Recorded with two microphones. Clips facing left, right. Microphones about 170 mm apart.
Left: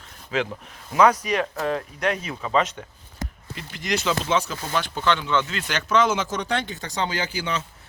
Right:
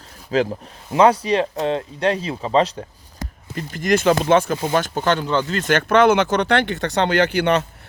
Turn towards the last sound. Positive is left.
turn(degrees=-65)  # may be behind; listen again after turning